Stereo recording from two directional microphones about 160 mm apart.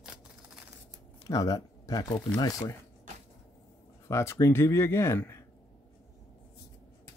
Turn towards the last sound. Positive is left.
turn(degrees=15)  # may be behind; listen again after turning